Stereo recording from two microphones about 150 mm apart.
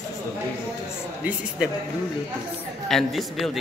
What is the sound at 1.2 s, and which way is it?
Speech, 5° right (ahead or behind).